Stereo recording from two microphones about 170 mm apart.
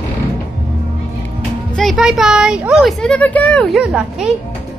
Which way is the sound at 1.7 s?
Centre (ahead or behind).